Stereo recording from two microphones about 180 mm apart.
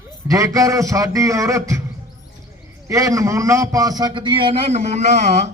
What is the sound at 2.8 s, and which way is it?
A man's voice, 15° right (ahead or behind).